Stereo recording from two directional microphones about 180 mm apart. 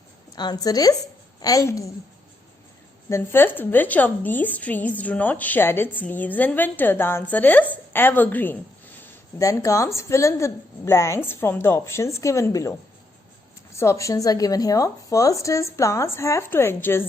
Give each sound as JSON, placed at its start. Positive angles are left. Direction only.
{"t": 0.3, "sound": "a woman's voice", "side_deg": 20}
{"t": 3.1, "sound": "a woman's voice", "side_deg": 10}
{"t": 13.7, "sound": "a woman's voice", "side_deg": 15}